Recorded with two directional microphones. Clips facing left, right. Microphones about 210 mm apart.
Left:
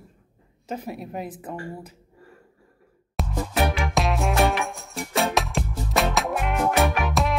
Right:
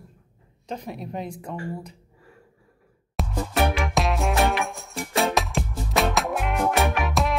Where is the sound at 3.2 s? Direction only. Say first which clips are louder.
Even; centre (ahead or behind).